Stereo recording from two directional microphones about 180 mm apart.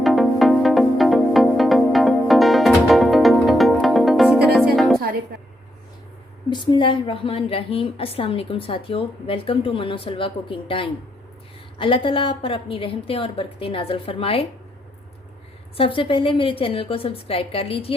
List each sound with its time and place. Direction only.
0.0 s music: centre (ahead or behind)
6.5 s a woman's voice: 25° left (ahead or behind)
15.8 s a woman's voice: 30° left (ahead or behind)